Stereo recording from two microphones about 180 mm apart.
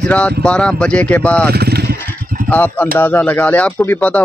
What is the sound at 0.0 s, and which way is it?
Speech, 5° left (ahead or behind).